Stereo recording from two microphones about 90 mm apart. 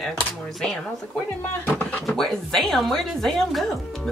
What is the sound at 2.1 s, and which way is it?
Speech, 5° left (ahead or behind).